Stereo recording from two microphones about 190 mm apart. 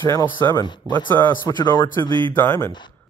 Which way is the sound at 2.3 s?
10° left (ahead or behind).